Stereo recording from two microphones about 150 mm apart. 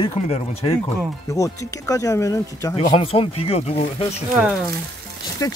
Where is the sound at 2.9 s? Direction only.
40° left (ahead or behind).